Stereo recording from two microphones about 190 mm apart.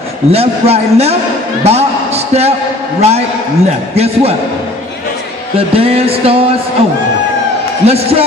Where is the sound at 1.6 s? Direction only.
35° right (ahead or behind).